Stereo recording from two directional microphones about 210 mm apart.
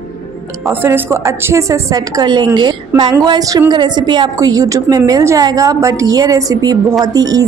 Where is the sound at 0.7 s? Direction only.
10° right (ahead or behind).